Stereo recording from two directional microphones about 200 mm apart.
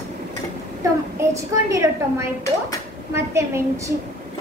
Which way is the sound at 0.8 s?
15° right (ahead or behind).